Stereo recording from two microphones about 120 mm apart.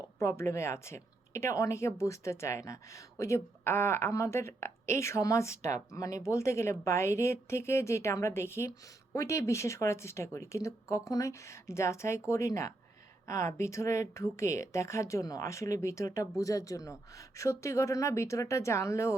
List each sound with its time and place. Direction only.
0.2 s speech: 25° left (ahead or behind)